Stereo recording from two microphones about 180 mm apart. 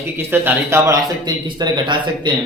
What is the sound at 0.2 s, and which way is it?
A man's voice, 10° right (ahead or behind).